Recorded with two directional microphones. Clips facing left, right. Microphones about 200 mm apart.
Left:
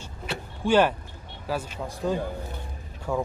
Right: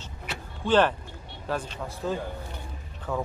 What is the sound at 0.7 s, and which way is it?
A man's voice, 10° left (ahead or behind).